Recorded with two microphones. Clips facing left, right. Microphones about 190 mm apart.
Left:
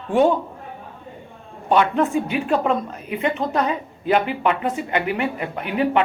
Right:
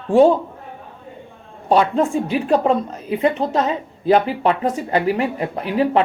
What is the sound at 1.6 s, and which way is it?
A woman's voice, 30° right (ahead or behind).